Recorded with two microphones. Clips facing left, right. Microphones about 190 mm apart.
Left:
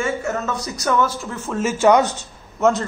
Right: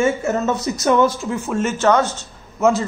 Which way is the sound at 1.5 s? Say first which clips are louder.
Left 2 dB; 5° left (ahead or behind).